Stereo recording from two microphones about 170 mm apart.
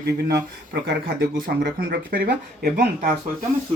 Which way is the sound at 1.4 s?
60° right (ahead or behind).